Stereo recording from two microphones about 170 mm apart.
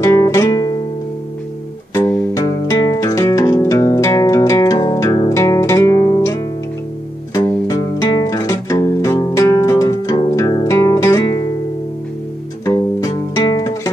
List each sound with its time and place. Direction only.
0.0 s music: 15° left (ahead or behind)
2.0 s music: 20° left (ahead or behind)
12.6 s music: 20° left (ahead or behind)